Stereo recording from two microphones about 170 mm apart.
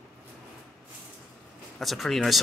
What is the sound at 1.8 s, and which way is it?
Speech, centre (ahead or behind).